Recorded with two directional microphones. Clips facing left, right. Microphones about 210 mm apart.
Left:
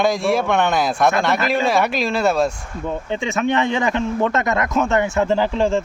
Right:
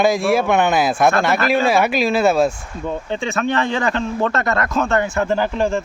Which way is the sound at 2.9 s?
15° left (ahead or behind).